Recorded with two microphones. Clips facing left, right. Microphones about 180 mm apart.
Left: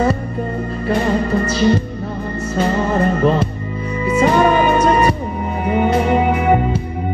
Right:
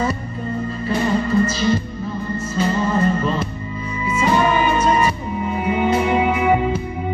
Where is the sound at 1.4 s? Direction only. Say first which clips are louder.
Left 3 dB; 65° left (ahead or behind).